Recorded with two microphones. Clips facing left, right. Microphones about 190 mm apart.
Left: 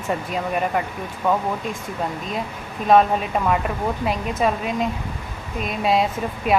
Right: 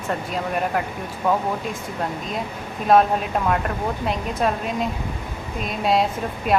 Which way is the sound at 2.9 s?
Centre (ahead or behind).